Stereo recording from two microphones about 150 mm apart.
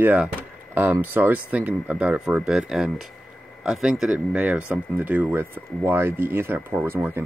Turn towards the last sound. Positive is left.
turn(degrees=-15)  # may be behind; listen again after turning